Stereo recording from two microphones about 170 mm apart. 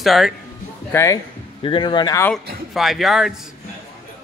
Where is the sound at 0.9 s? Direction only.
20° left (ahead or behind).